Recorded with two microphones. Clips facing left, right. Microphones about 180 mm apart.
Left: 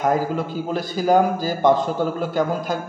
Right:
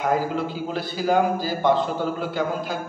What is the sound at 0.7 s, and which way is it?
A man's voice, 45° left (ahead or behind).